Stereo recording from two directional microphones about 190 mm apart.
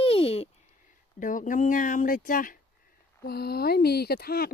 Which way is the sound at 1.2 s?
45° left (ahead or behind).